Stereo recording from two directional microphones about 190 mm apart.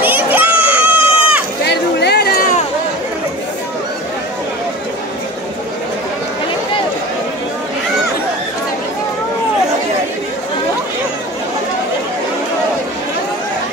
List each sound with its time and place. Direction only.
0.0 s crowd: 10° right (ahead or behind)
2.0 s music: 60° left (ahead or behind)